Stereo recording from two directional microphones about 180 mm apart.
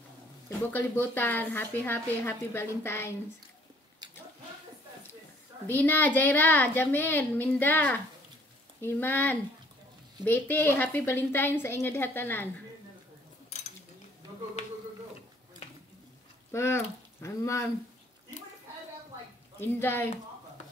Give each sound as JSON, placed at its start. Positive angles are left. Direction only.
{"t": 0.5, "sound": "a woman's voice", "side_deg": 10}
{"t": 4.0, "sound": "a sound", "side_deg": -25}
{"t": 5.7, "sound": "a woman's voice", "side_deg": 10}
{"t": 16.5, "sound": "speech", "side_deg": 15}
{"t": 19.6, "sound": "a woman's voice", "side_deg": 10}